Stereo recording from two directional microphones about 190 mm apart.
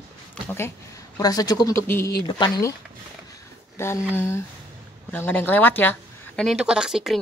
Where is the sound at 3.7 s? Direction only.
15° left (ahead or behind).